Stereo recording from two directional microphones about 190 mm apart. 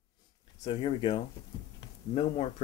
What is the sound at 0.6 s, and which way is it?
Speech, 25° left (ahead or behind).